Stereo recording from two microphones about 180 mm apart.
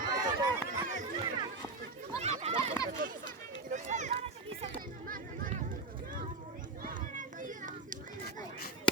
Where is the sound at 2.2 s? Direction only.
35° right (ahead or behind).